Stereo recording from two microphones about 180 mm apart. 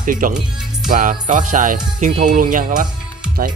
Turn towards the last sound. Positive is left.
turn(degrees=-50)  # may be behind; listen again after turning